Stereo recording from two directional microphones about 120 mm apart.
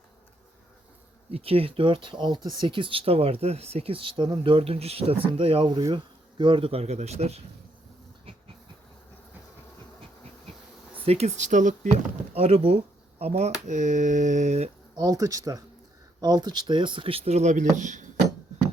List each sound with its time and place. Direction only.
1.3 s speech: 55° right (ahead or behind)
5.7 s speech: 40° right (ahead or behind); by 7.4 s 65° right (ahead or behind)
11.0 s speech: 60° right (ahead or behind); by 11.9 s 90° right
12.3 s speech: 55° right (ahead or behind); by 14.7 s 75° right (ahead or behind)
14.9 s speech: 30° right (ahead or behind); by 18.0 s 90° right